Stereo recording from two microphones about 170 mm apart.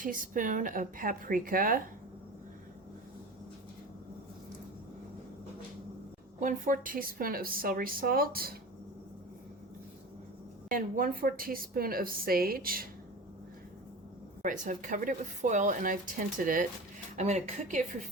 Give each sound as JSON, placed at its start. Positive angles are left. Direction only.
{"t": 0.0, "sound": "speech", "side_deg": -50}
{"t": 6.4, "sound": "a woman's voice", "side_deg": -50}
{"t": 10.7, "sound": "a woman's voice", "side_deg": -55}
{"t": 14.4, "sound": "speech", "side_deg": -50}
{"t": 17.2, "sound": "speech", "side_deg": -40}